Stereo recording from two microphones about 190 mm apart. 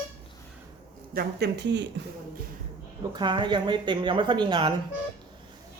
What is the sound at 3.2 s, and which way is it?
Speech, 25° right (ahead or behind).